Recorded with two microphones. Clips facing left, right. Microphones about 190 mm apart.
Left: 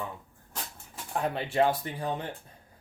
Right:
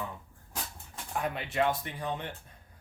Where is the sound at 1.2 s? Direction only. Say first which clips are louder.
Left 4 dB; 30° left (ahead or behind).